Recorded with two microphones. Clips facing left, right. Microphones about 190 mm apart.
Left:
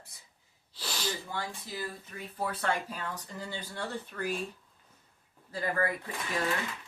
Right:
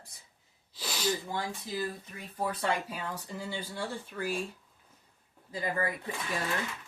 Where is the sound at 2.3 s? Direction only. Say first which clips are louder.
Right 1 dB; 10° right (ahead or behind).